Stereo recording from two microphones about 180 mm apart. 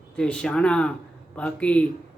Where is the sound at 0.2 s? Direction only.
5° left (ahead or behind).